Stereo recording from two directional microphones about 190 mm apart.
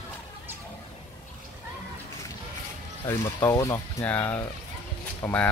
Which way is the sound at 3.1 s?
15° left (ahead or behind).